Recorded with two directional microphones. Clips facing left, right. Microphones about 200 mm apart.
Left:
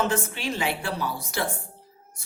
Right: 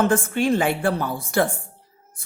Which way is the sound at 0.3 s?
50° right (ahead or behind).